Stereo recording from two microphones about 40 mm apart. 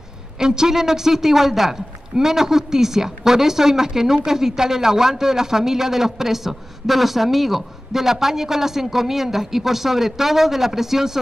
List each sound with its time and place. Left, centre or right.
0.4 s a man's voice: centre